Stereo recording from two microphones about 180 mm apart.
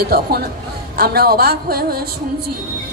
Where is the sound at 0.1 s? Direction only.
60° right (ahead or behind).